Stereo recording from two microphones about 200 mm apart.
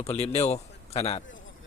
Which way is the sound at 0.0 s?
30° left (ahead or behind).